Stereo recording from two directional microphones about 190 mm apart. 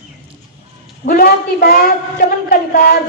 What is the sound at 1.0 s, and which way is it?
A woman's voice, 50° left (ahead or behind).